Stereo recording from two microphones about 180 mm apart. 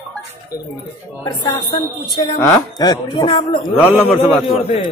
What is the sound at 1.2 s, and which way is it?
Speech, 20° left (ahead or behind).